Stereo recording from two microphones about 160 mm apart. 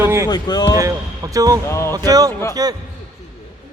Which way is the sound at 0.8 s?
20° right (ahead or behind).